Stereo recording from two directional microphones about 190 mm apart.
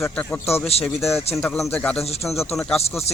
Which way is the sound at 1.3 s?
Centre (ahead or behind).